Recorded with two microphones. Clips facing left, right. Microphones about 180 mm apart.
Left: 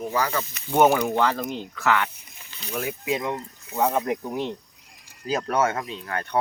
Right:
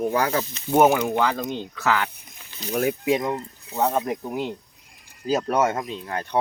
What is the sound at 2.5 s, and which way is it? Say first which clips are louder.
Speech: right 6 dB; 40° right (ahead or behind).